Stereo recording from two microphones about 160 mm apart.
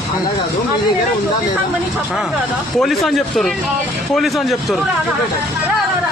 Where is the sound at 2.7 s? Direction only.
Centre (ahead or behind).